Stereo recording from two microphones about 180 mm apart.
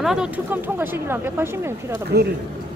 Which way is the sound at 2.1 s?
60° right (ahead or behind).